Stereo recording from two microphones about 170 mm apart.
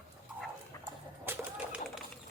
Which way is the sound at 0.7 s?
20° left (ahead or behind).